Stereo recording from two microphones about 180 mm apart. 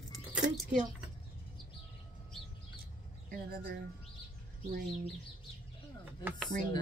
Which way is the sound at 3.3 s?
55° right (ahead or behind).